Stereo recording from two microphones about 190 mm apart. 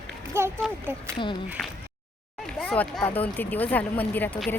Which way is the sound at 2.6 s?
10° left (ahead or behind).